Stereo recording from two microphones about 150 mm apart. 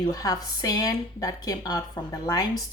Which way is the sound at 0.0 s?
25° left (ahead or behind).